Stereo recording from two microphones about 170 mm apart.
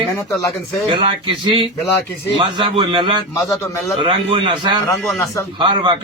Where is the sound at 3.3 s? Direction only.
20° left (ahead or behind).